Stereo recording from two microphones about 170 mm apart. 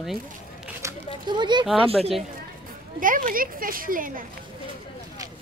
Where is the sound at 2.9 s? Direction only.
50° right (ahead or behind).